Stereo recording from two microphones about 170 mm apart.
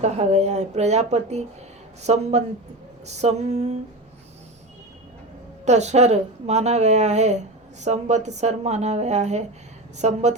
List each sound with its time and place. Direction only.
0.0 s speech: 40° right (ahead or behind)
5.6 s a woman's voice: 40° right (ahead or behind)